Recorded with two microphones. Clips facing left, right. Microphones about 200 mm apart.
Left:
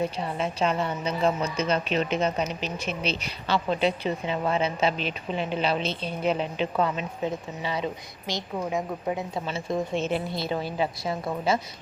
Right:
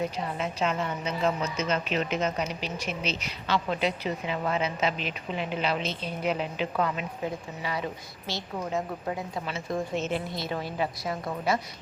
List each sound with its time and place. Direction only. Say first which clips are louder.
0.0 s a woman's voice: left 2 dB; 30° left (ahead or behind)